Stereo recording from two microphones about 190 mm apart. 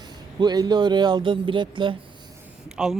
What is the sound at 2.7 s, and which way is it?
Speech, 5° right (ahead or behind).